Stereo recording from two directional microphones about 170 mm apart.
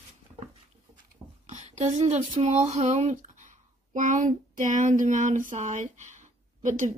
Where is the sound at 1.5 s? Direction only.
45° right (ahead or behind).